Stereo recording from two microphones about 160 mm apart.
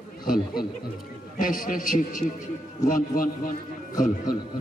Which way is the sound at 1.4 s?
60° left (ahead or behind).